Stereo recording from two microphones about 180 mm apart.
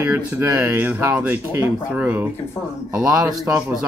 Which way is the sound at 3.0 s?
20° right (ahead or behind).